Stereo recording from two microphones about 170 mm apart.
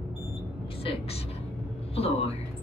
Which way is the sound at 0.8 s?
35° left (ahead or behind).